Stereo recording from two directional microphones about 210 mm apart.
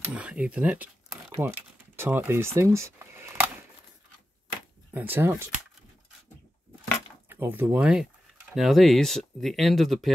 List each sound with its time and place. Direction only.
0.0 s speech: 5° right (ahead or behind)
1.4 s a sound: 10° right (ahead or behind)
4.9 s speech: 10° right (ahead or behind)
7.2 s speech: 10° right (ahead or behind)